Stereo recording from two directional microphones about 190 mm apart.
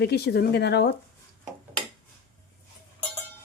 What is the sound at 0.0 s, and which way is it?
Speech, 55° left (ahead or behind).